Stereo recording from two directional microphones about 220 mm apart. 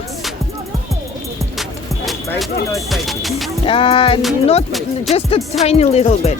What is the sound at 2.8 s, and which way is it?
Music, centre (ahead or behind).